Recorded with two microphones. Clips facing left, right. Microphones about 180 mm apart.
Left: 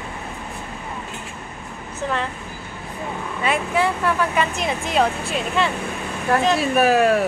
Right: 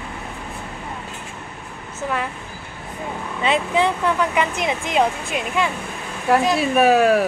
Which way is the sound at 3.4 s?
20° right (ahead or behind).